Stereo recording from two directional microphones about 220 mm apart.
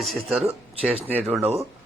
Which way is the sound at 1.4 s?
30° right (ahead or behind).